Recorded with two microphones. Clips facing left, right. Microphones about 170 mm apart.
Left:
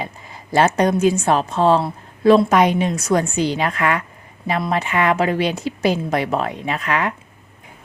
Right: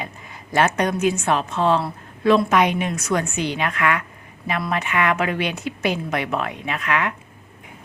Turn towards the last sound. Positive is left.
turn(degrees=35)  # may be behind; listen again after turning